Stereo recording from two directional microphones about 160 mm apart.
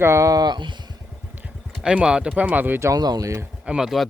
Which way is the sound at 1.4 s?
10° right (ahead or behind).